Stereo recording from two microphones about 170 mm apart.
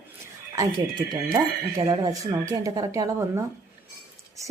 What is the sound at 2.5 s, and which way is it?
Speech, 20° right (ahead or behind).